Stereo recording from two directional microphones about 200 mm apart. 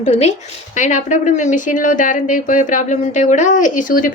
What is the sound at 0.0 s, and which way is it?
Speech, 35° left (ahead or behind).